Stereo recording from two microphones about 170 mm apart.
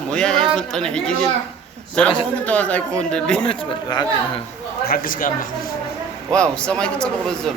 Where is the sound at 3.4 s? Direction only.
25° left (ahead or behind).